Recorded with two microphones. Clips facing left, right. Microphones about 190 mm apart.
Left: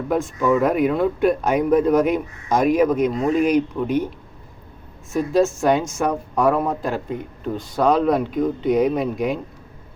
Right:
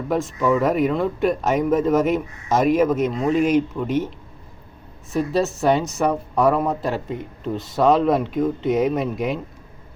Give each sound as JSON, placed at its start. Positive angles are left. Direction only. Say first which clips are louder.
{"t": 0.1, "sound": "speech", "louder": "left 1 dB", "side_deg": 0}
{"t": 5.1, "sound": "speech", "louder": "left 3 dB", "side_deg": 0}